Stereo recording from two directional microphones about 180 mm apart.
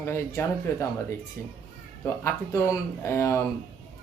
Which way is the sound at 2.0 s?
15° left (ahead or behind).